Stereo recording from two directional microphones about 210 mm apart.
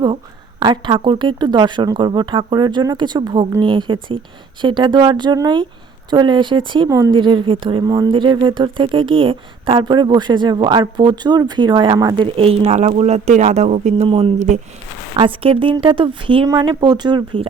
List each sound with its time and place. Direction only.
0.6 s speech: 20° right (ahead or behind)